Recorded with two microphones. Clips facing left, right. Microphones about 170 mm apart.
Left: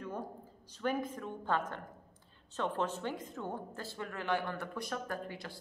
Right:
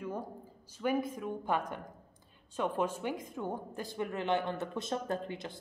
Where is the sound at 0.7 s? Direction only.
10° right (ahead or behind).